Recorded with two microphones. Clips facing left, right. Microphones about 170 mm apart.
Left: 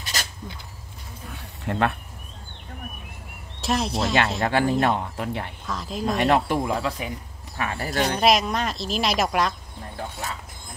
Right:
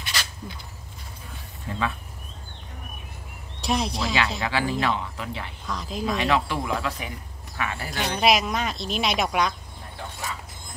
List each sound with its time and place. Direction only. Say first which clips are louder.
0.0 s a sound: even; 45° left (ahead or behind)
1.7 s speech: left 5 dB; 65° left (ahead or behind)
3.6 s speech: left 2 dB; centre (ahead or behind)
4.4 s speech: left 4 dB; 50° left (ahead or behind)
5.7 s speech: right 1 dB; centre (ahead or behind)
6.0 s speech: left 3 dB; 50° left (ahead or behind)
8.2 s speech: even; centre (ahead or behind)